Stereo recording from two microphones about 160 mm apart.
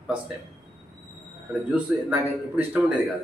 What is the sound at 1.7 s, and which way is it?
A man's voice, 10° right (ahead or behind).